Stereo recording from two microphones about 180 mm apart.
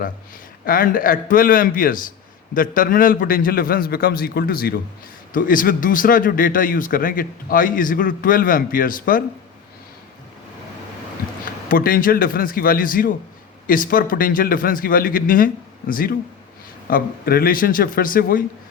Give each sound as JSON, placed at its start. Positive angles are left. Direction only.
{"t": 0.6, "sound": "speech", "side_deg": 50}
{"t": 11.7, "sound": "speech", "side_deg": 50}